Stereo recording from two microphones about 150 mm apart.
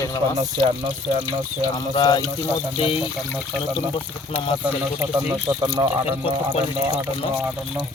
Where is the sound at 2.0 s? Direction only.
30° left (ahead or behind).